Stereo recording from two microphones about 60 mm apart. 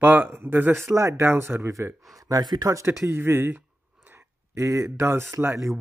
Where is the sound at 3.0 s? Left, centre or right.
Right.